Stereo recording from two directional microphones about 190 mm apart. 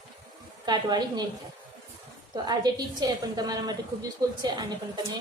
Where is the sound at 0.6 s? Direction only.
20° right (ahead or behind).